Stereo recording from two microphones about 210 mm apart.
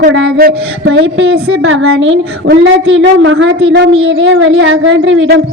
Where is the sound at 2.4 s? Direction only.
55° right (ahead or behind).